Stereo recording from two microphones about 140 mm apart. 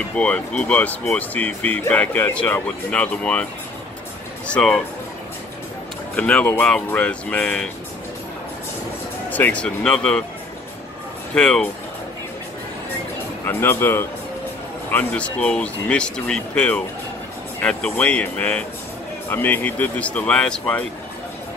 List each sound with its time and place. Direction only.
0.1 s speech: 10° left (ahead or behind)
4.5 s speech: 5° left (ahead or behind)
6.1 s speech: 10° left (ahead or behind)
9.3 s speech: 10° left (ahead or behind)
11.3 s speech: 5° left (ahead or behind)
13.5 s speech: 15° left (ahead or behind)